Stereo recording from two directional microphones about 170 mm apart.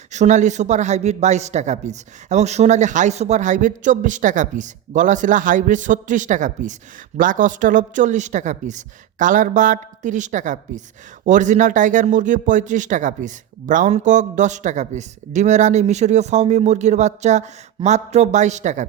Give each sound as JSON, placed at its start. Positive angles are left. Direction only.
{"t": 0.1, "sound": "a man's voice", "side_deg": -45}